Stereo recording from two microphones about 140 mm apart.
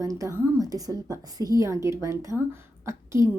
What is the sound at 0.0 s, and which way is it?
A woman's voice, 25° right (ahead or behind).